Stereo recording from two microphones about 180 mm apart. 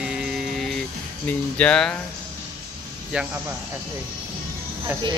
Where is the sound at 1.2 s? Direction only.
5° left (ahead or behind).